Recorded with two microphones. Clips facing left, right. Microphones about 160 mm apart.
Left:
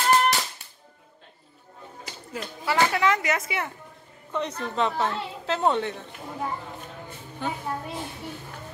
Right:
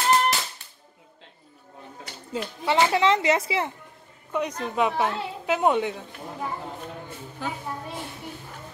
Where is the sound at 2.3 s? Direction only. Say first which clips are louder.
Right 3 dB; 25° right (ahead or behind).